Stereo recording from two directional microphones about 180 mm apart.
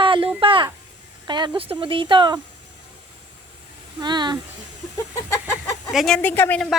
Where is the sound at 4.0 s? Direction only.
25° right (ahead or behind).